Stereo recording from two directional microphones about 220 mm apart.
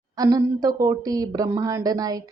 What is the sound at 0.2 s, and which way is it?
A woman's voice, 15° right (ahead or behind).